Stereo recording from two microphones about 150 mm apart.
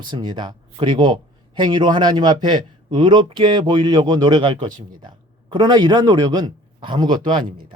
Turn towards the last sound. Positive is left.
turn(degrees=-30)  # may be behind; listen again after turning